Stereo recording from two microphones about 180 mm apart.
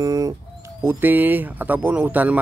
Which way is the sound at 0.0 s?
20° right (ahead or behind).